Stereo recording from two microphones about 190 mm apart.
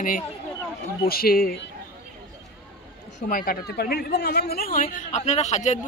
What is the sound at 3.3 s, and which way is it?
Speech, 50° left (ahead or behind).